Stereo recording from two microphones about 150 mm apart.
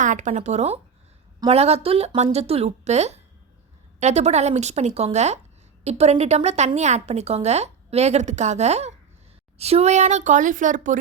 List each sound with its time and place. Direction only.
0.0 s speech: 55° right (ahead or behind)